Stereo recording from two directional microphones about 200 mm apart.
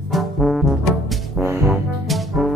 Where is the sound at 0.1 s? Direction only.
Centre (ahead or behind).